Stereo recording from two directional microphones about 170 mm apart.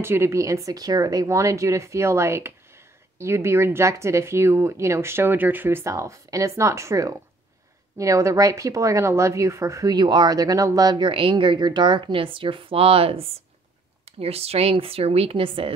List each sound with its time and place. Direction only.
0.0 s speech: 15° right (ahead or behind); by 15.7 s 30° right (ahead or behind)